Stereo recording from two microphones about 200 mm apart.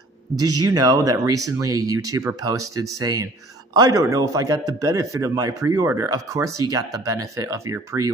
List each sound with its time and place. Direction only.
0.4 s a man's voice: 20° right (ahead or behind)